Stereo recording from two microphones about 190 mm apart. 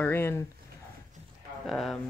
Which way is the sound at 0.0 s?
10° left (ahead or behind).